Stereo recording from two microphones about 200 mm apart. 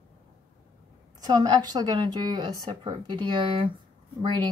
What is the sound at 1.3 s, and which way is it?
Speech, 20° right (ahead or behind).